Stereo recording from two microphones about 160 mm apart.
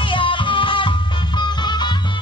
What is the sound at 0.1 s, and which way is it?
Music, 30° left (ahead or behind).